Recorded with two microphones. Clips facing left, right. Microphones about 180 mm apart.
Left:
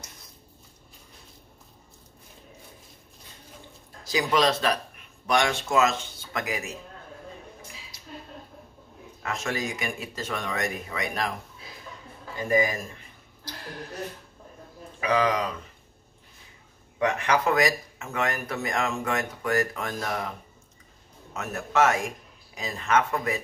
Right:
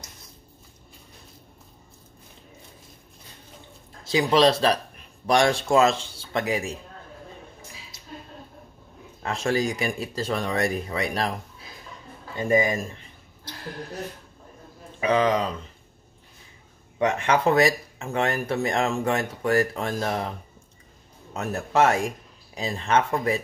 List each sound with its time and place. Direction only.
4.0 s speech: 25° right (ahead or behind)
9.2 s speech: 30° right (ahead or behind)
12.4 s speech: 25° right (ahead or behind)
15.0 s speech: 25° right (ahead or behind)
17.0 s speech: 25° right (ahead or behind)